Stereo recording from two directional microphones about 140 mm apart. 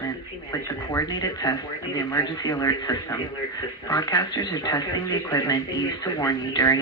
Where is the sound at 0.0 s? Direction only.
25° left (ahead or behind).